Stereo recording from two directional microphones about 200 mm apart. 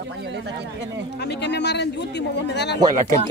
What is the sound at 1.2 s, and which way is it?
Speech, 55° left (ahead or behind).